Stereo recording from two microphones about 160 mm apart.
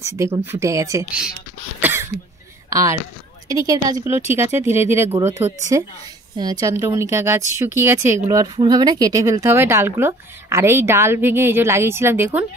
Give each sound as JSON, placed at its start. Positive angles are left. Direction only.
{"t": 0.0, "sound": "a woman's voice", "side_deg": -15}
{"t": 1.8, "sound": "cough", "side_deg": -15}
{"t": 2.7, "sound": "a woman's voice", "side_deg": -20}